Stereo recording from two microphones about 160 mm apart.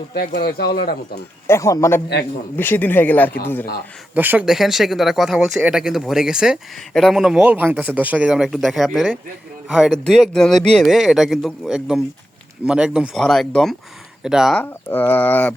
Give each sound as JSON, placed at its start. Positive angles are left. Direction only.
{"t": 0.1, "sound": "speech", "side_deg": 80}
{"t": 1.5, "sound": "speech", "side_deg": 20}
{"t": 4.1, "sound": "speech", "side_deg": -10}
{"t": 14.6, "sound": "speech", "side_deg": 10}